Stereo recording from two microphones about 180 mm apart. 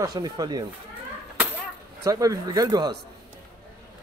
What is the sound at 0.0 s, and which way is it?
Speech, 20° right (ahead or behind).